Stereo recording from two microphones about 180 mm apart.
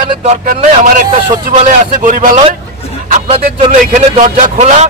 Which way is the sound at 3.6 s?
40° right (ahead or behind).